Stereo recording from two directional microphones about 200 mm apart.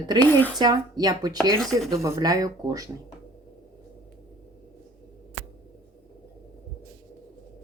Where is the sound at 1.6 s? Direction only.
Centre (ahead or behind).